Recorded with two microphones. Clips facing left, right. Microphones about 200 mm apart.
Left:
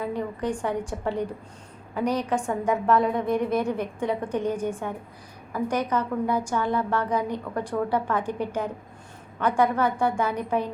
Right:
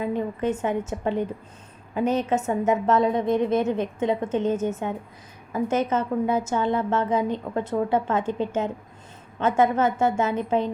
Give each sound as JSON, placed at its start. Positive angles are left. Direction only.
{"t": 0.0, "sound": "a woman's voice", "side_deg": -20}